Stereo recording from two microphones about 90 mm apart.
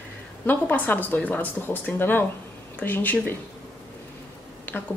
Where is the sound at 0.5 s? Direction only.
20° left (ahead or behind).